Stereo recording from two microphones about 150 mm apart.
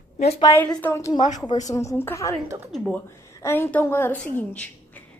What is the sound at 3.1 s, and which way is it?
A woman's voice, 20° left (ahead or behind).